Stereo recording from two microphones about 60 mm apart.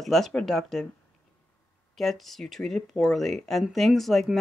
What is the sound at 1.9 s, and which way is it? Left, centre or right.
Speech, centre.